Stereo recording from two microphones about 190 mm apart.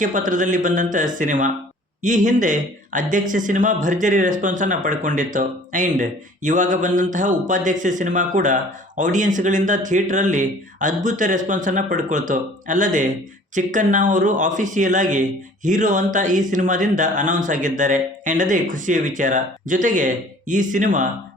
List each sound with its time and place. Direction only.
0.0 s speech: 45° right (ahead or behind)